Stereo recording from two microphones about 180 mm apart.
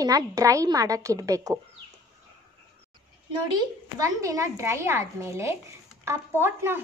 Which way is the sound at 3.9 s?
15° right (ahead or behind).